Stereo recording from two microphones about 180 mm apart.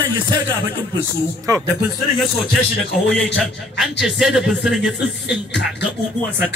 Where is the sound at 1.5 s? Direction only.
20° right (ahead or behind).